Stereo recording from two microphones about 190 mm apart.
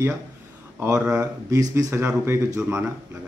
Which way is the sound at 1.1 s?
15° right (ahead or behind).